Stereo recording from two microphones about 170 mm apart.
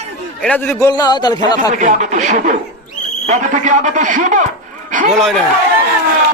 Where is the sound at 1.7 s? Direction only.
45° right (ahead or behind).